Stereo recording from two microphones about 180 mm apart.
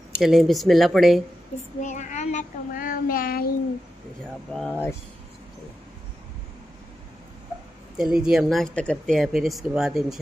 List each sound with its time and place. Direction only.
0.2 s speech: centre (ahead or behind)
1.8 s a child's voice: 45° left (ahead or behind)
4.5 s speech: centre (ahead or behind)
8.0 s speech: 5° right (ahead or behind)